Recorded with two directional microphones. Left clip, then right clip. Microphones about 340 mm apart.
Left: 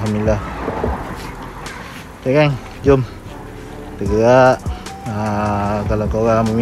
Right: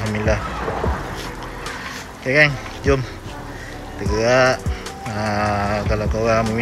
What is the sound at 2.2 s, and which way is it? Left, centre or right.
Speech, centre.